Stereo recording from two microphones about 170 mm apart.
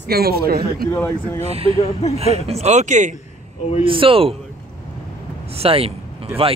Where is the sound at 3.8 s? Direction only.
30° right (ahead or behind).